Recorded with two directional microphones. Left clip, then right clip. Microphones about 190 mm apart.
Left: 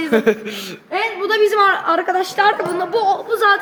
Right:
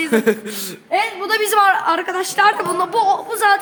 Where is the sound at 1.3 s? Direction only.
30° right (ahead or behind).